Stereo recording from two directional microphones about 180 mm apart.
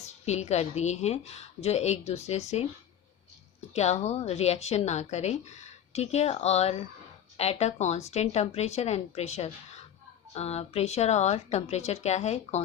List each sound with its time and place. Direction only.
0.0 s a woman's voice: 40° left (ahead or behind)
3.8 s a woman's voice: 40° left (ahead or behind)